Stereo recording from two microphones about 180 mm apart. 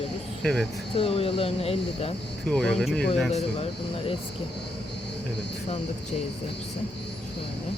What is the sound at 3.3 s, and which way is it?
Speech, 35° left (ahead or behind).